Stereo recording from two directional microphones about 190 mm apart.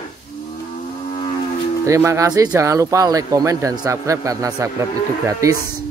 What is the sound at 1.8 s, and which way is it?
Speech, 15° right (ahead or behind).